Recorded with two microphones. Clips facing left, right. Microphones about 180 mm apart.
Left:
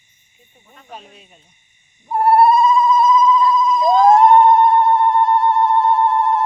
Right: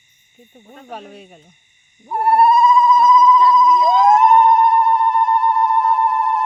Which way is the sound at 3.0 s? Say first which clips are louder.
Right 2 dB; 30° left (ahead or behind).